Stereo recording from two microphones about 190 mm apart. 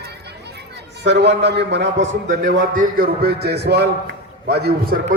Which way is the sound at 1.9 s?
45° right (ahead or behind).